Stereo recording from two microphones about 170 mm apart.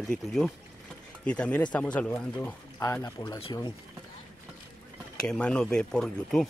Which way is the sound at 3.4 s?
30° left (ahead or behind).